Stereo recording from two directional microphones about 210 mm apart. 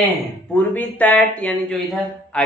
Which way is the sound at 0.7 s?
5° left (ahead or behind).